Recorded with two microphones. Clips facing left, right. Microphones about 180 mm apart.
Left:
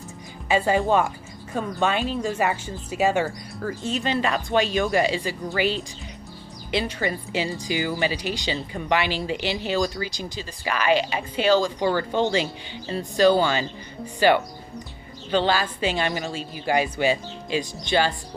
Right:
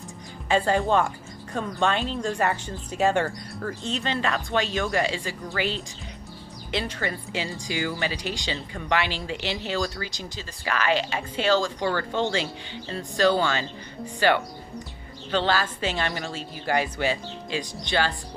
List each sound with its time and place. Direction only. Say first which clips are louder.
0.5 s speech: left 2 dB; 10° left (ahead or behind)
6.7 s speech: left 4 dB; 10° left (ahead or behind)
15.3 s speech: left 2 dB; 10° left (ahead or behind)